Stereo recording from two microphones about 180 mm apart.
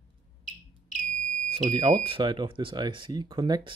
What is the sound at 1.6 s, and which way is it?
A man's voice, 25° right (ahead or behind).